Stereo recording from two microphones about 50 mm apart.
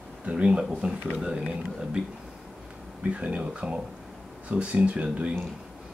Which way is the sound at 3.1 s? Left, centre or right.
Right.